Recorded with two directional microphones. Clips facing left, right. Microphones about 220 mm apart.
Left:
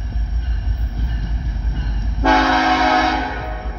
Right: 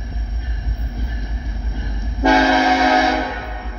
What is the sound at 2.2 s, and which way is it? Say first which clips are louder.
Train: right 2 dB; 15° right (ahead or behind).